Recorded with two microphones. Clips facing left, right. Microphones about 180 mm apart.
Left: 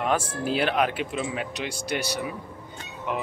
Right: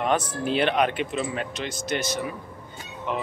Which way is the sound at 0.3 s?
5° left (ahead or behind).